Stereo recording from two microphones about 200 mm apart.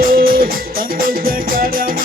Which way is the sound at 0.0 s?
45° right (ahead or behind).